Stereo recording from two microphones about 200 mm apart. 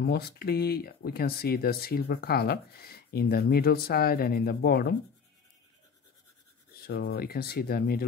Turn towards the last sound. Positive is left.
turn(degrees=50)  # may be behind; listen again after turning